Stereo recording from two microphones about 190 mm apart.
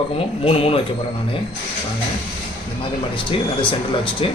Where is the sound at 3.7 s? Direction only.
25° left (ahead or behind).